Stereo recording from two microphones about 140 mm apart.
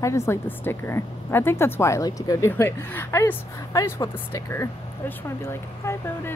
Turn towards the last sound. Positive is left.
turn(degrees=20)  # may be behind; listen again after turning